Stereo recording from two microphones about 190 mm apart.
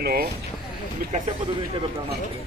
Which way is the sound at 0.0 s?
55° right (ahead or behind).